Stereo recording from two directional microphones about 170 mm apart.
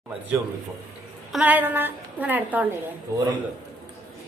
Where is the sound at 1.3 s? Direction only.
10° right (ahead or behind).